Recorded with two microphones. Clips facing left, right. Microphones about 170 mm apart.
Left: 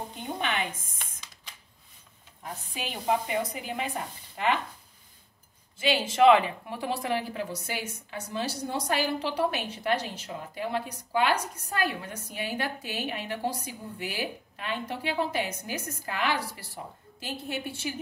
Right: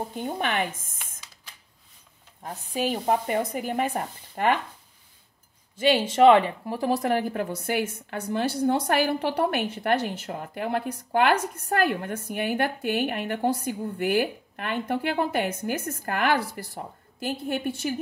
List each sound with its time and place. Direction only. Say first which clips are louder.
0.1 s speech: right 1 dB; 50° right (ahead or behind)
0.9 s computer keyboard: even; 5° right (ahead or behind)
2.4 s speech: right 9 dB; 40° right (ahead or behind)
5.8 s speech: right 4 dB; 35° right (ahead or behind); by 17.9 s 50° right (ahead or behind)